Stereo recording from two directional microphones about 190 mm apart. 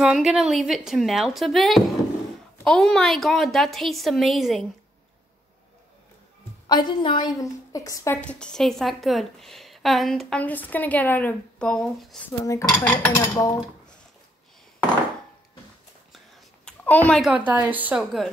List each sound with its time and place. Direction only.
0.0 s a woman's voice: 5° right (ahead or behind)
6.7 s a woman's voice: 25° left (ahead or behind); by 12.2 s 5° left (ahead or behind)
12.4 s a woman's voice: 15° left (ahead or behind)
16.6 s a sound: 10° left (ahead or behind)
17.5 s a woman's voice: 10° right (ahead or behind)